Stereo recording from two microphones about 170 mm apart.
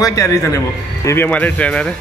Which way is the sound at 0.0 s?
20° left (ahead or behind).